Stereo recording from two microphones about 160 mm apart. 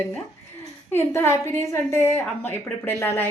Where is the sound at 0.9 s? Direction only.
15° left (ahead or behind).